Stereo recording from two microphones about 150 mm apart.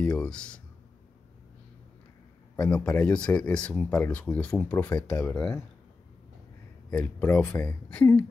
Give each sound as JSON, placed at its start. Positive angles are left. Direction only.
{"t": 0.0, "sound": "speech", "side_deg": 5}
{"t": 2.6, "sound": "speech", "side_deg": 5}
{"t": 4.9, "sound": "speech", "side_deg": 20}
{"t": 6.9, "sound": "speech", "side_deg": 10}